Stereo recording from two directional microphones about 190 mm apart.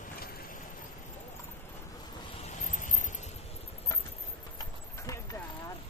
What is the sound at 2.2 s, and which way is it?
Vehicle, 30° left (ahead or behind).